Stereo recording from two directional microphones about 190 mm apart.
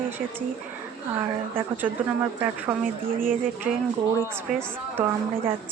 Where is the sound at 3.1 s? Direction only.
45° right (ahead or behind).